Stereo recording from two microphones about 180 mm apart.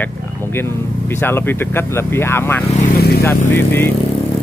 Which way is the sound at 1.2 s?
10° left (ahead or behind).